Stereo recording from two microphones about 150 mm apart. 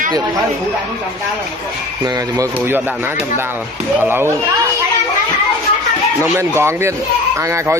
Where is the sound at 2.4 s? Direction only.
15° right (ahead or behind).